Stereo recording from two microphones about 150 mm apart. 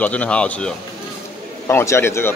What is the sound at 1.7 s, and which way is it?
Speech, 15° left (ahead or behind).